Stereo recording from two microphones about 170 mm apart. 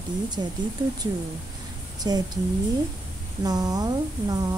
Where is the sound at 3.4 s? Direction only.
20° right (ahead or behind).